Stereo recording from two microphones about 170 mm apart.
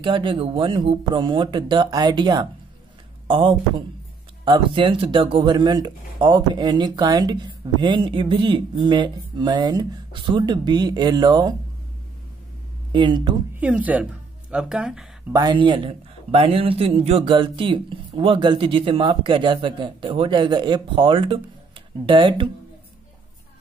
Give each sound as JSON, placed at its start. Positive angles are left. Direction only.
{"t": 0.0, "sound": "speech", "side_deg": -30}
{"t": 12.9, "sound": "speech", "side_deg": -30}
{"t": 13.6, "sound": "speech", "side_deg": -10}
{"t": 15.3, "sound": "a man's voice", "side_deg": -25}